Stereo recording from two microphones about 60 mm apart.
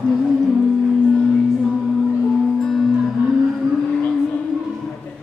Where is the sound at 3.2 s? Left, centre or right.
Right.